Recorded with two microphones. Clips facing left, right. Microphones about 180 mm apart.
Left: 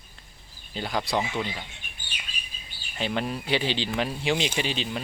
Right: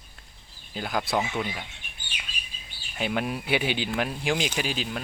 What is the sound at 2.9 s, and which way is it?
Speech, 5° right (ahead or behind).